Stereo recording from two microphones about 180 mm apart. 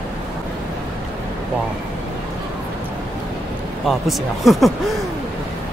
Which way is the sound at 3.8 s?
Centre (ahead or behind).